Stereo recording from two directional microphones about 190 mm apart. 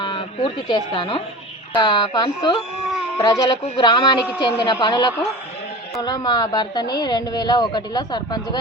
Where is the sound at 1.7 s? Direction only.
20° left (ahead or behind).